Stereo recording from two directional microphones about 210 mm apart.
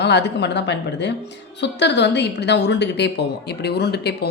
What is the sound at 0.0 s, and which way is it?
Speech, 55° left (ahead or behind).